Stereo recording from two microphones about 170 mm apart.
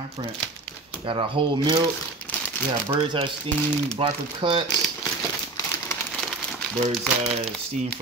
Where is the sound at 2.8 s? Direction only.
30° right (ahead or behind).